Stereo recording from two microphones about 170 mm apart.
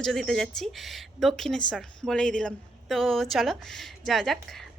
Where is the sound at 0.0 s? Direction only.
Centre (ahead or behind).